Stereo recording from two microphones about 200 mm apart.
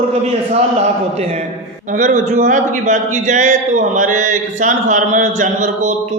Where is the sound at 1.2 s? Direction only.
30° right (ahead or behind).